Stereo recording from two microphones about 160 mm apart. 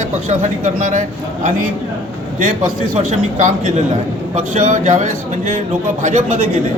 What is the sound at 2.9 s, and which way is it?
A man's voice, 50° right (ahead or behind).